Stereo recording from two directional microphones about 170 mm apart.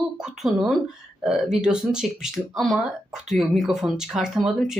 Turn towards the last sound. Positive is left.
turn(degrees=0)  # may be behind; listen again after turning